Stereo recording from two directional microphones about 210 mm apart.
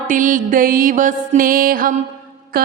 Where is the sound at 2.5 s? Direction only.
45° right (ahead or behind).